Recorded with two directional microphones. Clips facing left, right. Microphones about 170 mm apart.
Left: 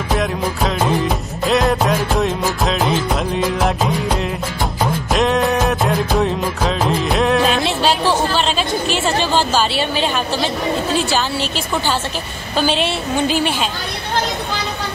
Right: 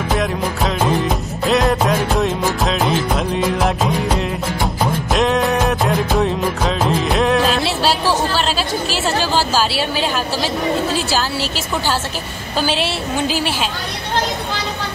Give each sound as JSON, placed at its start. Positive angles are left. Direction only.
{"t": 0.1, "sound": "music", "side_deg": 0}
{"t": 5.1, "sound": "music of bollywood", "side_deg": 0}
{"t": 8.0, "sound": "chatter", "side_deg": 15}
{"t": 8.5, "sound": "a woman's voice", "side_deg": -5}